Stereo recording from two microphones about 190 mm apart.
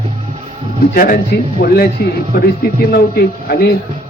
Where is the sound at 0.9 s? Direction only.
50° left (ahead or behind).